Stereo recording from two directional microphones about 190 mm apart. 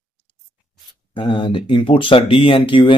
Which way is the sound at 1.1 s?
25° left (ahead or behind).